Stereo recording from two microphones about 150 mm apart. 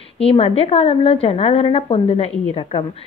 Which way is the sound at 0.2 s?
40° left (ahead or behind).